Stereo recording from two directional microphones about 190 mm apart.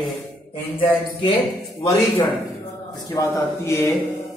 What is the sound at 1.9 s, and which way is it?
Speech, 30° left (ahead or behind).